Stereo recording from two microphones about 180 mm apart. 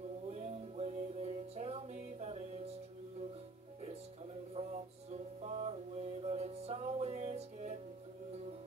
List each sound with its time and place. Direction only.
0.3 s music: 35° right (ahead or behind)
4.6 s music: 30° right (ahead or behind)